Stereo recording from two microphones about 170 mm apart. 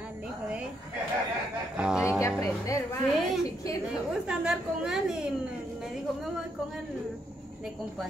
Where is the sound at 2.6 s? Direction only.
20° left (ahead or behind).